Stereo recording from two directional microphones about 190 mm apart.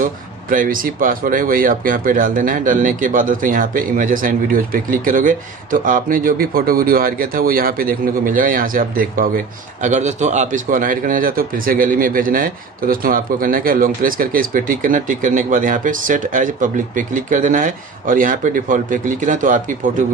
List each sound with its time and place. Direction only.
0.5 s a man's voice: 45° right (ahead or behind)